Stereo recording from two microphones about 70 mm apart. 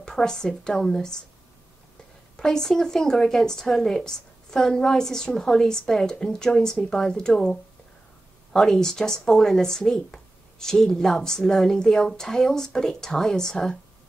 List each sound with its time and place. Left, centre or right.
0.0 s speech: centre
2.3 s speech: centre
8.5 s speech: centre